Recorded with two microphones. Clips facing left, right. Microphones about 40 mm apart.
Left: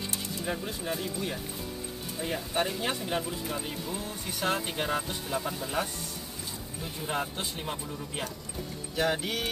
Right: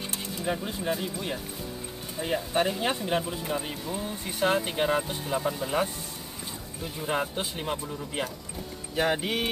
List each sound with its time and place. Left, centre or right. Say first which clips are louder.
0.7 s speech: right 3 dB; centre